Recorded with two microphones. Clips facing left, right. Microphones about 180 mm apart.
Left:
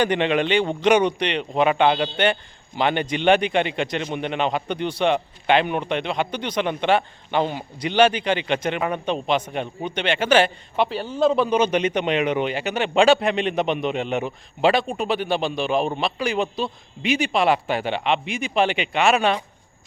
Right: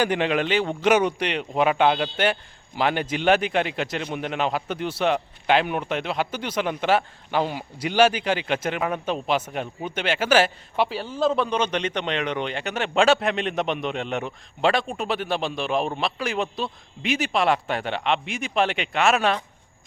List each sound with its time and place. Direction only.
0.0 s speech: 5° right (ahead or behind)